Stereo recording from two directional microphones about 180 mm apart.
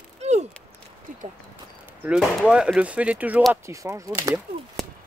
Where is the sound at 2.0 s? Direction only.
5° right (ahead or behind).